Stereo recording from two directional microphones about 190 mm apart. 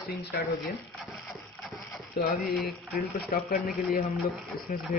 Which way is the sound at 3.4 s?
50° left (ahead or behind).